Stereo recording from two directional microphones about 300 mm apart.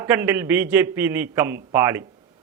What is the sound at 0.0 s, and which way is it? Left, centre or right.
A man's voice, centre.